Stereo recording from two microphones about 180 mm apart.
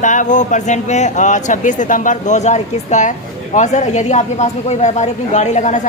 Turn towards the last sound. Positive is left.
turn(degrees=45)  # may be behind; listen again after turning